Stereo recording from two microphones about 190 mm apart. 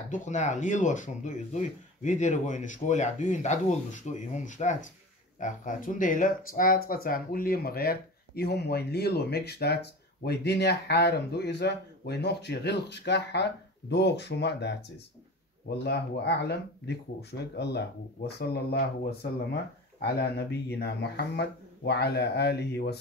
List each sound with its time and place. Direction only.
0.1 s speech: 40° left (ahead or behind); by 14.8 s 65° left (ahead or behind)
15.8 s speech: 60° left (ahead or behind)